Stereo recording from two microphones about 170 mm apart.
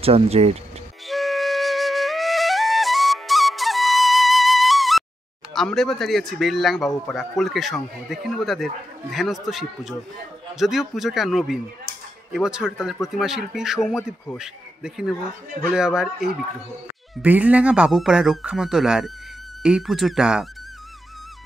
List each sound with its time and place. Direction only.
0.0 s speech: 35° right (ahead or behind)
1.0 s flute: centre (ahead or behind)
5.5 s speech: centre (ahead or behind)